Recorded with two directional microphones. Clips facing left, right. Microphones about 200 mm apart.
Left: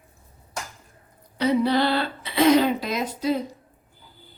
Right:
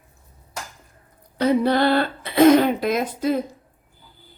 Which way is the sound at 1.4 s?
50° right (ahead or behind).